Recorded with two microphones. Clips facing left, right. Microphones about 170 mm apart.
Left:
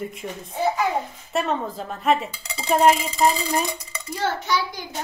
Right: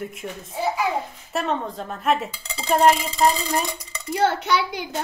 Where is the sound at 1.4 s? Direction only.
Centre (ahead or behind).